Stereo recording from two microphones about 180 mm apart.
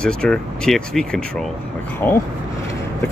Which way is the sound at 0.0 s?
5° left (ahead or behind).